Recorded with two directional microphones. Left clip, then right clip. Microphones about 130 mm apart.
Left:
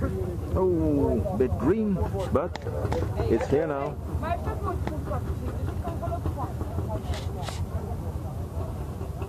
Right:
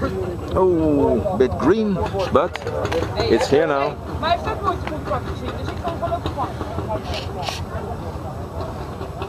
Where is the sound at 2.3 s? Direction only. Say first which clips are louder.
Right 9 dB; 55° right (ahead or behind).